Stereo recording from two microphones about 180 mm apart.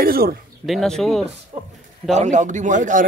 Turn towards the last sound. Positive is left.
turn(degrees=-45)  # may be behind; listen again after turning